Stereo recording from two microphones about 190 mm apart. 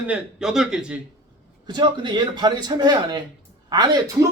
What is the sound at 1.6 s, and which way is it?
A man's voice, 25° right (ahead or behind).